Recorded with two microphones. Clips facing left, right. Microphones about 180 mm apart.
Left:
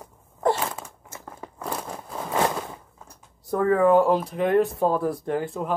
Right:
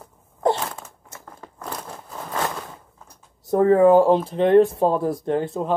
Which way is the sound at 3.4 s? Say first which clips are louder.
Right 5 dB; 25° right (ahead or behind).